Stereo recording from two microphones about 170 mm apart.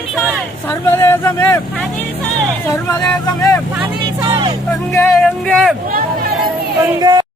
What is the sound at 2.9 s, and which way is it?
Speech, 20° left (ahead or behind).